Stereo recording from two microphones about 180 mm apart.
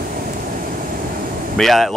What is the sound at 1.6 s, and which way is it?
Speech, centre (ahead or behind).